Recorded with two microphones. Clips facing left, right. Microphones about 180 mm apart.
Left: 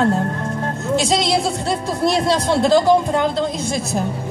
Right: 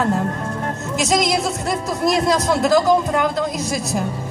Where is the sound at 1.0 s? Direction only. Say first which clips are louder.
Right 1 dB; 30° left (ahead or behind).